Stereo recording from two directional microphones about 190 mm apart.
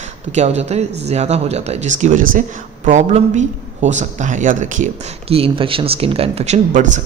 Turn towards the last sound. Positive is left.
turn(degrees=-40)  # may be behind; listen again after turning